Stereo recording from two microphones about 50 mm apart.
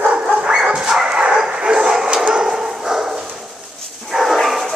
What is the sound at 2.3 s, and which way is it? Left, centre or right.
Dog, centre.